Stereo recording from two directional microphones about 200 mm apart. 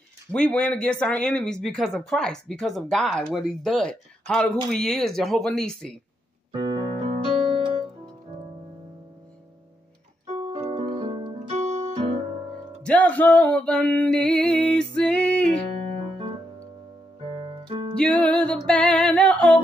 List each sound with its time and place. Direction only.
0.3 s speech: 5° left (ahead or behind)
6.5 s keyboard: 25° right (ahead or behind)
10.3 s piano: 30° right (ahead or behind)
12.8 s music: 10° left (ahead or behind)
17.2 s music: 25° right (ahead or behind)
17.9 s music: 5° left (ahead or behind)